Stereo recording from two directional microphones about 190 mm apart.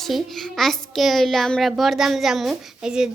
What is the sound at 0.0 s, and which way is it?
A child's voice, centre (ahead or behind).